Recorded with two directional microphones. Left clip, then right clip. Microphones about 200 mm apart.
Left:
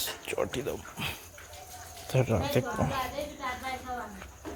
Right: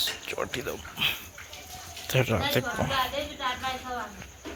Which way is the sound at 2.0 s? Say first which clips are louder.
Right 3 dB; 5° left (ahead or behind).